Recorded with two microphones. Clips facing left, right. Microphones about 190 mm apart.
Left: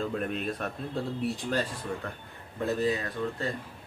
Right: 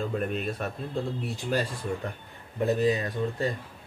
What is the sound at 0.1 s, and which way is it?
Speech, 5° right (ahead or behind).